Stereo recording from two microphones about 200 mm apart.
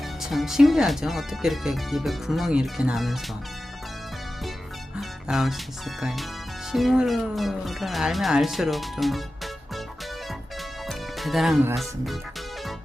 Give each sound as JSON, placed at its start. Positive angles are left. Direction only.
{"t": 0.2, "sound": "speech", "side_deg": 0}
{"t": 4.9, "sound": "music", "side_deg": 0}
{"t": 6.0, "sound": "speech", "side_deg": 0}
{"t": 10.8, "sound": "music", "side_deg": 0}
{"t": 11.7, "sound": "speech", "side_deg": 0}